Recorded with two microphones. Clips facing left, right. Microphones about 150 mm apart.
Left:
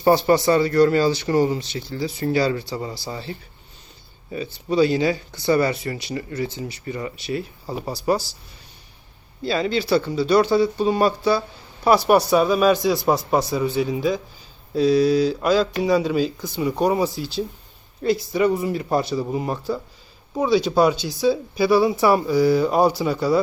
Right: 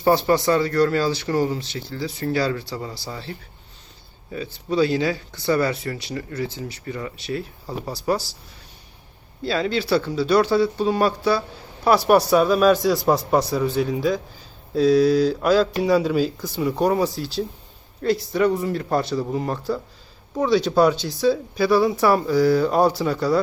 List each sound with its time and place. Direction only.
0.3 s speech: 5° left (ahead or behind)
9.4 s speech: centre (ahead or behind)